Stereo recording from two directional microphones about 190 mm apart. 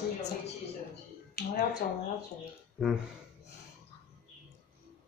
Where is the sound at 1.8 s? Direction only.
45° left (ahead or behind).